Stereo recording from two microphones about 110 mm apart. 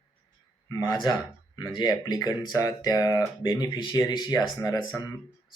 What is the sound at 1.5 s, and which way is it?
Speech, 40° left (ahead or behind).